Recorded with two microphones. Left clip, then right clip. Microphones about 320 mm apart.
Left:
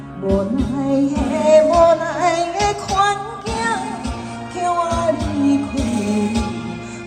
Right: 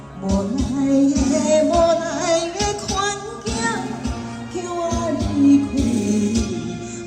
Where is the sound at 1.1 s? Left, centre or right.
Centre.